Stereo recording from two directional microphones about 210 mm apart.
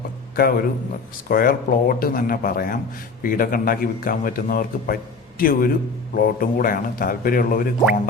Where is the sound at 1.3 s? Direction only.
45° left (ahead or behind).